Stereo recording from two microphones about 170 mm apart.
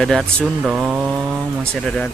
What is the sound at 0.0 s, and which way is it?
Speech, 5° left (ahead or behind).